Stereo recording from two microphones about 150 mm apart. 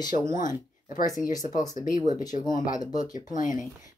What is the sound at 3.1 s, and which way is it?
Speech, 60° left (ahead or behind).